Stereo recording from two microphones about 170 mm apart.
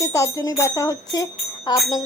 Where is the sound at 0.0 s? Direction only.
20° left (ahead or behind).